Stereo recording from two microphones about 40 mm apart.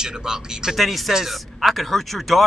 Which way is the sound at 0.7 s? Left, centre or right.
Centre.